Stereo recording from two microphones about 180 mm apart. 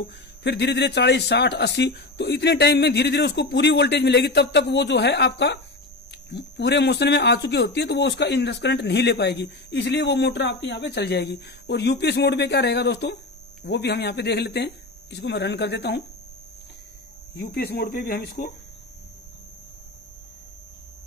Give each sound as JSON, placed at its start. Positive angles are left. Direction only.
{"t": 0.0, "sound": "speech", "side_deg": 70}
{"t": 17.3, "sound": "speech", "side_deg": 60}